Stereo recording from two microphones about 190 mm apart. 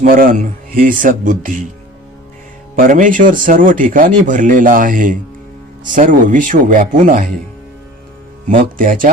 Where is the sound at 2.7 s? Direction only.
45° right (ahead or behind).